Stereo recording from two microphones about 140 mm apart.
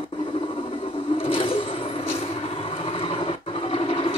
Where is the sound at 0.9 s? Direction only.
40° left (ahead or behind).